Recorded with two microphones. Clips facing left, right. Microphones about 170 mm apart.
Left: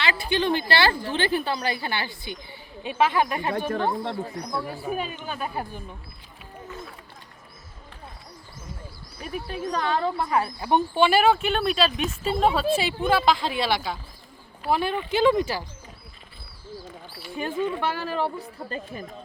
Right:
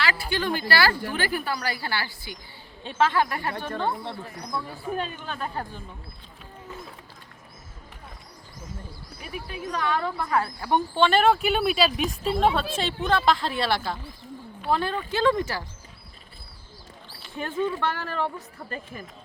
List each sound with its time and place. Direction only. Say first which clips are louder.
0.0 s a woman's voice: left 2 dB; 20° left (ahead or behind)
9.7 s speech: left 2 dB; 30° left (ahead or behind); by 14.0 s centre (ahead or behind)
14.7 s speech: left 2 dB; 15° left (ahead or behind)
17.3 s speech: left 1 dB; 15° left (ahead or behind)